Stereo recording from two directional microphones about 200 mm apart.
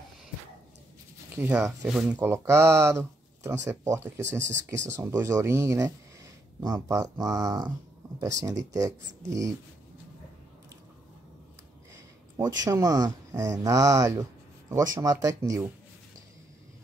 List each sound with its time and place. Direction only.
1.3 s speech: 10° right (ahead or behind)
12.4 s speech: 15° right (ahead or behind)